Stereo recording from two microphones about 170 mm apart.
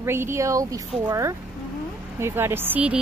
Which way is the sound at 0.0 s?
15° right (ahead or behind).